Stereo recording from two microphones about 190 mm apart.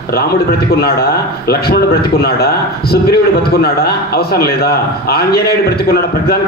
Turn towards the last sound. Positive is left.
turn(degrees=55)  # may be behind; listen again after turning